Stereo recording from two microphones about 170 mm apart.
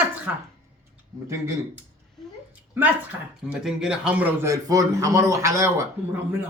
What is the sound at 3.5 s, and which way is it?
Speech, 5° right (ahead or behind).